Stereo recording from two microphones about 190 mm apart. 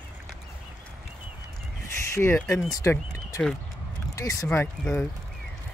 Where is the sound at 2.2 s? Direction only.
15° left (ahead or behind).